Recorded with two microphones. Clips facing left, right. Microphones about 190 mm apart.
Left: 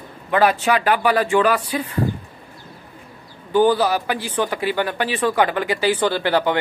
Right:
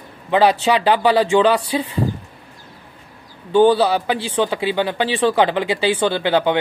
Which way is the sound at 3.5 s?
25° right (ahead or behind).